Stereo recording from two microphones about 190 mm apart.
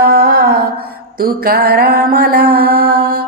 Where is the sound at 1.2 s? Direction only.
50° right (ahead or behind).